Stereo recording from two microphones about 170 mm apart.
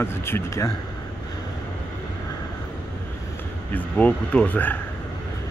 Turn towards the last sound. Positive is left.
turn(degrees=10)  # may be behind; listen again after turning